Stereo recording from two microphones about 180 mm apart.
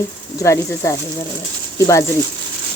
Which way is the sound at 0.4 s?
15° left (ahead or behind).